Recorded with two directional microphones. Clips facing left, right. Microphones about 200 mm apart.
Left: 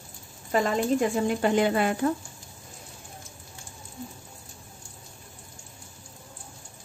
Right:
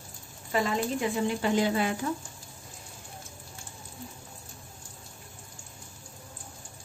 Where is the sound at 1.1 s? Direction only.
55° left (ahead or behind).